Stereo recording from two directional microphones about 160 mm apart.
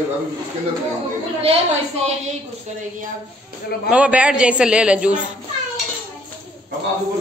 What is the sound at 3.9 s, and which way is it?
A woman's voice, 10° right (ahead or behind).